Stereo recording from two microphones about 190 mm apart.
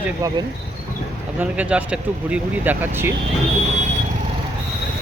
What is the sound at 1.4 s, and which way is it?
Speech, 5° right (ahead or behind).